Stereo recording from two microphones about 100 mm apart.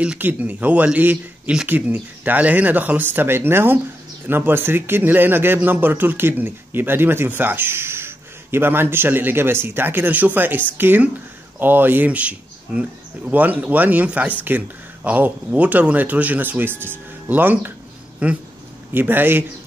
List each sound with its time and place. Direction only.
0.0 s a man's voice: 15° right (ahead or behind)